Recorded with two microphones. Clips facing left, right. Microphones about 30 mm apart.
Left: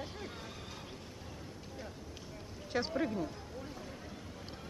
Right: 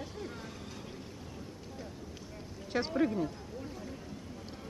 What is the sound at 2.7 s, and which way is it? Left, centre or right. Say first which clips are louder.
Speech: right 4 dB; centre.